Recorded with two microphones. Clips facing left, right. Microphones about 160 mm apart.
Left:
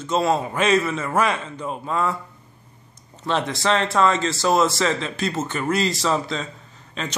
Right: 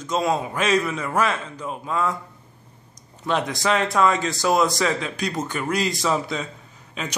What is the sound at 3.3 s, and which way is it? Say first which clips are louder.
Speech: left 1 dB; 15° right (ahead or behind).